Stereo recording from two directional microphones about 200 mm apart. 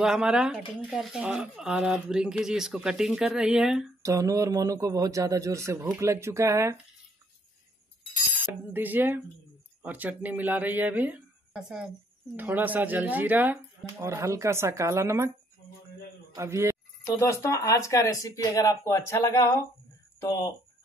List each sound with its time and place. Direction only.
0.0 s speech: 5° right (ahead or behind)
4.0 s speech: 15° right (ahead or behind)
8.7 s speech: 10° right (ahead or behind)
16.3 s speech: 15° right (ahead or behind)
17.0 s speech: 15° left (ahead or behind)